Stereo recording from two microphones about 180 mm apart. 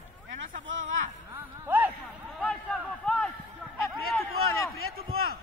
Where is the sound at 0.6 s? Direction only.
90° right.